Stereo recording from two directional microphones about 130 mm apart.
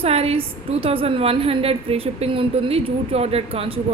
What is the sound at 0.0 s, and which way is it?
A woman's voice, 50° right (ahead or behind).